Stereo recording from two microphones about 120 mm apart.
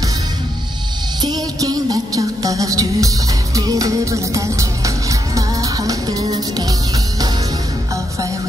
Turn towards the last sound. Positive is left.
turn(degrees=-35)  # may be behind; listen again after turning